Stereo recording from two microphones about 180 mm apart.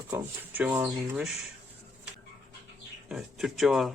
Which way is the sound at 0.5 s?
5° right (ahead or behind).